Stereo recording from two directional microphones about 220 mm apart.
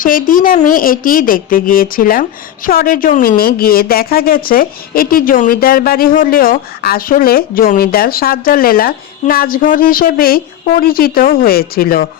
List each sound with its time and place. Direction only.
0.0 s speech: 40° left (ahead or behind)